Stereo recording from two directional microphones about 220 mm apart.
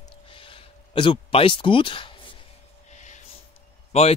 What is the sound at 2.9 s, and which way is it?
Gasp, 30° left (ahead or behind).